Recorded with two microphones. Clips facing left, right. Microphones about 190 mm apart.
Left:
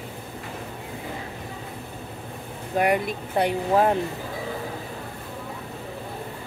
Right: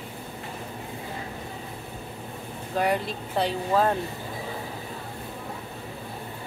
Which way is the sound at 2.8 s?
15° left (ahead or behind).